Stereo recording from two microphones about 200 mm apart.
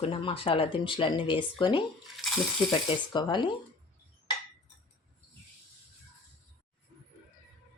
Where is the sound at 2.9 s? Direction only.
25° left (ahead or behind).